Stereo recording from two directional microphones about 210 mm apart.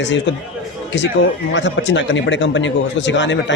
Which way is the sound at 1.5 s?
60° left (ahead or behind).